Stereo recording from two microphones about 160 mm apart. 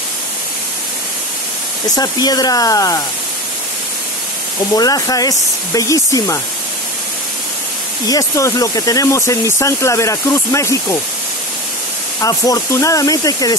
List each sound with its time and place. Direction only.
1.9 s speech: 25° left (ahead or behind)
4.7 s speech: 25° left (ahead or behind)
8.1 s speech: 20° left (ahead or behind)
12.2 s speech: 20° left (ahead or behind)